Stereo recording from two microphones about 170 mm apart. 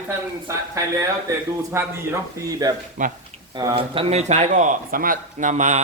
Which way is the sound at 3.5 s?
25° right (ahead or behind).